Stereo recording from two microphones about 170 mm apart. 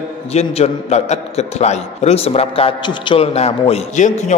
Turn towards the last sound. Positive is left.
turn(degrees=45)  # may be behind; listen again after turning